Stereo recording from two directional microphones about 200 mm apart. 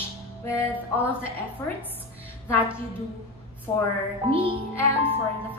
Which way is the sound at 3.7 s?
15° left (ahead or behind).